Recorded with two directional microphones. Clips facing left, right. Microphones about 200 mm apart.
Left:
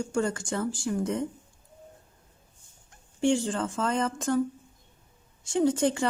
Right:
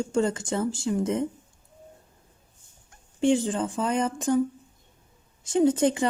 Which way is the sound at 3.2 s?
20° right (ahead or behind).